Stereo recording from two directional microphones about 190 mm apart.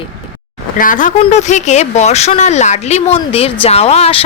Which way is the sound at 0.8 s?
45° left (ahead or behind).